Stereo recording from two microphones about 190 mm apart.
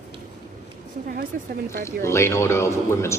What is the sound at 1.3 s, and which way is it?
Speech, 50° right (ahead or behind).